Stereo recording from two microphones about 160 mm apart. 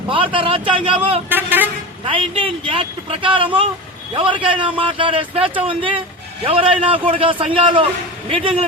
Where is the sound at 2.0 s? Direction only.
35° right (ahead or behind).